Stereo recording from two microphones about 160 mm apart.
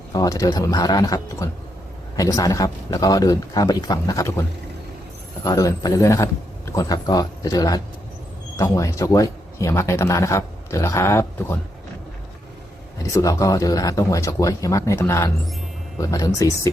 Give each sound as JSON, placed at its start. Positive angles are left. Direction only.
{"t": 0.1, "sound": "a man's voice", "side_deg": 20}
{"t": 13.0, "sound": "a man's voice", "side_deg": 20}